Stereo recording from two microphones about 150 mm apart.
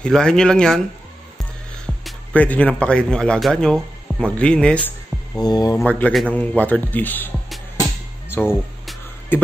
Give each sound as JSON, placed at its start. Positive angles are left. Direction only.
{"t": 0.0, "sound": "speech", "side_deg": 5}
{"t": 2.0, "sound": "a man's voice", "side_deg": 10}
{"t": 5.4, "sound": "speech", "side_deg": 25}
{"t": 5.9, "sound": "a man's voice", "side_deg": 10}
{"t": 8.3, "sound": "speech", "side_deg": 15}